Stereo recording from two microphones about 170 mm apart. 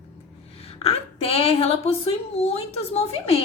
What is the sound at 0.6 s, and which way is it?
A woman's voice, 35° left (ahead or behind).